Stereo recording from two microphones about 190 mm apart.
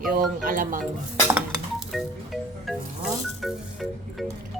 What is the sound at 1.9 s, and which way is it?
Music, centre (ahead or behind).